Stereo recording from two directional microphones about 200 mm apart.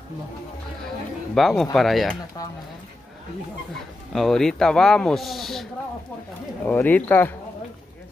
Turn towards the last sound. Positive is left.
turn(degrees=10)  # may be behind; listen again after turning